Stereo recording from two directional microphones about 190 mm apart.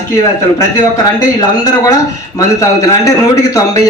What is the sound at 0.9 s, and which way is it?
A man's voice, 20° left (ahead or behind).